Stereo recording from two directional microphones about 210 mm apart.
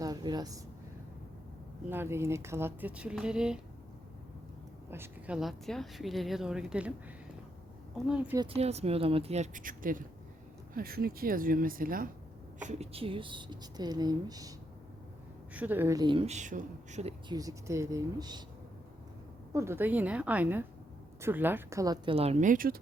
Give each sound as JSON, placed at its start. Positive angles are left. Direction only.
{"t": 0.0, "sound": "a sound", "side_deg": -20}
{"t": 1.9, "sound": "speech", "side_deg": -10}
{"t": 4.9, "sound": "a woman's voice", "side_deg": -10}
{"t": 8.0, "sound": "a woman's voice", "side_deg": -5}
{"t": 8.4, "sound": "speech", "side_deg": -30}
{"t": 12.6, "sound": "speech", "side_deg": -30}
{"t": 15.5, "sound": "speech", "side_deg": -10}
{"t": 17.3, "sound": "speech", "side_deg": -15}
{"t": 19.5, "sound": "speech", "side_deg": -10}